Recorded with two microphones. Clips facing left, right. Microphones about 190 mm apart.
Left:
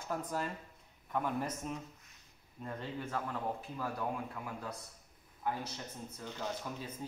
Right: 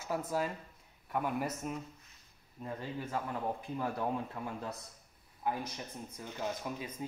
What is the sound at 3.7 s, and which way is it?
Speech, 25° right (ahead or behind).